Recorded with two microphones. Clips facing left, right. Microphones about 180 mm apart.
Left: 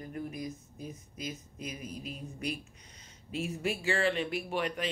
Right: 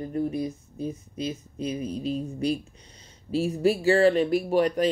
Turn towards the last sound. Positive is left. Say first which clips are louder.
# right 11 dB
turn(degrees=-40)  # may be behind; listen again after turning